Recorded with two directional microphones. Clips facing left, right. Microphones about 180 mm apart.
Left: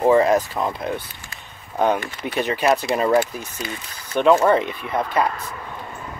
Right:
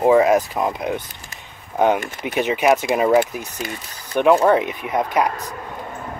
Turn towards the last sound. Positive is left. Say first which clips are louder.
# right 2 dB
turn(degrees=-15)  # may be behind; listen again after turning